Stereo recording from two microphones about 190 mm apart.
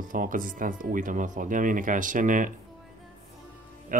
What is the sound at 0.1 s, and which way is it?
Speech, 45° right (ahead or behind).